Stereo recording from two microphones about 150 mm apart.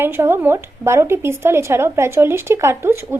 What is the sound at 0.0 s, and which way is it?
A woman's voice, 15° right (ahead or behind).